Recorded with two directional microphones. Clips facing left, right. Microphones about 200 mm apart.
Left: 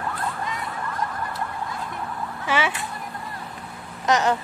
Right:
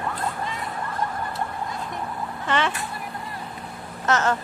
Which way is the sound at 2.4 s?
10° left (ahead or behind).